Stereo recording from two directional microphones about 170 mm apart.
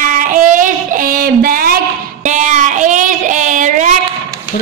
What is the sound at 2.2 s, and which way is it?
Child singing, 45° right (ahead or behind).